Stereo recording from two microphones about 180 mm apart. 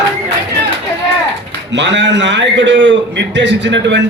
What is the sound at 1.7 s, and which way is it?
A man's voice, 80° right.